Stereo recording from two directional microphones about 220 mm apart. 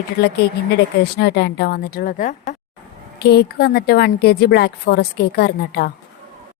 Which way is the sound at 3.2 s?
45° left (ahead or behind).